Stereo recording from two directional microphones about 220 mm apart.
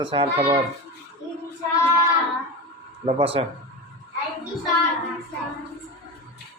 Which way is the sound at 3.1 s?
25° right (ahead or behind).